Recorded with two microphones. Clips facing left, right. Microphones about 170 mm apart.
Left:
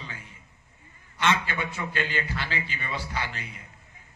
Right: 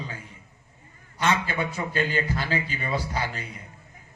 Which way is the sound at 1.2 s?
40° right (ahead or behind).